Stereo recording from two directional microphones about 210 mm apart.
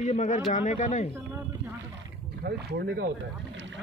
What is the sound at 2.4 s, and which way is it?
Speech, 50° right (ahead or behind).